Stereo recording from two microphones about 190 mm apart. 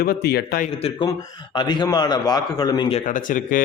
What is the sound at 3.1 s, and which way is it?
Speech, 45° left (ahead or behind).